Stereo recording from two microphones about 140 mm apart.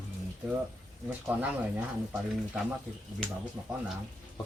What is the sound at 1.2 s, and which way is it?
Speech, 10° right (ahead or behind).